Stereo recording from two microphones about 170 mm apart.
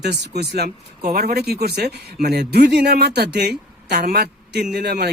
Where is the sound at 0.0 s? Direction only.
75° right (ahead or behind).